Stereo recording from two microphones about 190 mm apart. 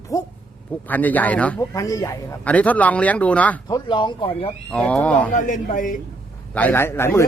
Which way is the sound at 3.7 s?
25° left (ahead or behind).